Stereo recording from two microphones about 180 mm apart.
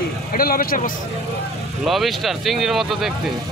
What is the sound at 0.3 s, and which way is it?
Speech, 55° left (ahead or behind).